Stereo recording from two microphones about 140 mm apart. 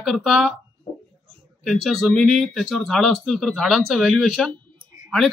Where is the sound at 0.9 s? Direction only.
60° left (ahead or behind).